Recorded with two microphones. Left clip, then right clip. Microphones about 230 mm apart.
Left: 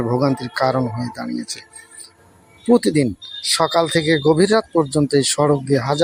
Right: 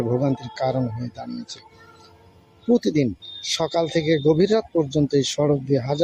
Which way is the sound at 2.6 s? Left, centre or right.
Centre.